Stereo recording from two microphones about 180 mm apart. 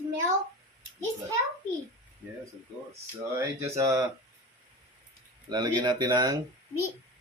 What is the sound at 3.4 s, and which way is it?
Speech, 15° right (ahead or behind).